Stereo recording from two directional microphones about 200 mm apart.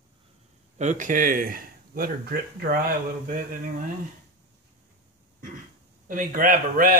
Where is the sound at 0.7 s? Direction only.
40° right (ahead or behind).